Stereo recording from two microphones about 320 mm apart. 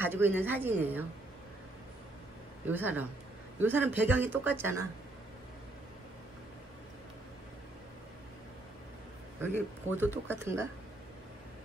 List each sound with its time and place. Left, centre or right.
0.0 s speech: centre
2.6 s speech: centre
9.4 s speech: centre